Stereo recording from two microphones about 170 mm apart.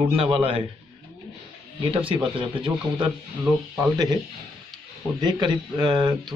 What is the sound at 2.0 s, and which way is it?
Speech, 30° right (ahead or behind).